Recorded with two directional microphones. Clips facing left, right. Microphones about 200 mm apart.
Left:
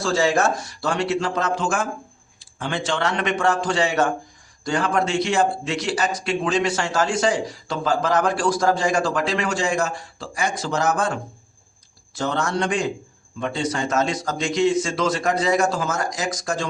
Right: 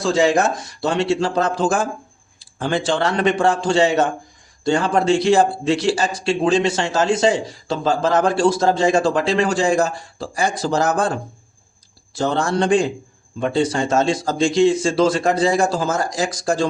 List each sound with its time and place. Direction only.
0.0 s a man's voice: 20° right (ahead or behind)